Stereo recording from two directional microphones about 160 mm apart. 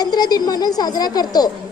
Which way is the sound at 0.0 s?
25° left (ahead or behind).